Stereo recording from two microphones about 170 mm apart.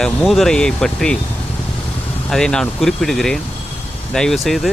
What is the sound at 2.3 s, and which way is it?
Speech, 5° left (ahead or behind).